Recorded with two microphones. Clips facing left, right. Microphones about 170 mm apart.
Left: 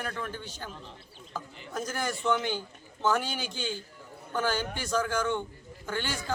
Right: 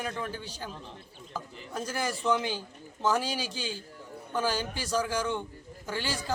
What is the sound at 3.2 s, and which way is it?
Speech, 35° right (ahead or behind).